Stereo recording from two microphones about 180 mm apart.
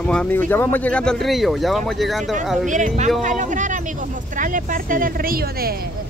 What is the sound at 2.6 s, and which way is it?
Speech, 45° right (ahead or behind).